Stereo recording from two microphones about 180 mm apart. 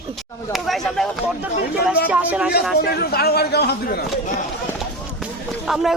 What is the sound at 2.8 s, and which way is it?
A man's voice, 60° left (ahead or behind).